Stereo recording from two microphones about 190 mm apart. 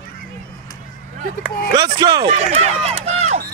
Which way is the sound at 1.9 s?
20° right (ahead or behind).